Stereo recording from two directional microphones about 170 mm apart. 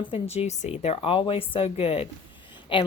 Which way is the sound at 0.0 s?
35° left (ahead or behind).